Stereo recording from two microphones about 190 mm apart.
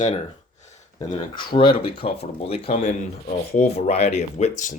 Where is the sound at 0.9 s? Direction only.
25° left (ahead or behind).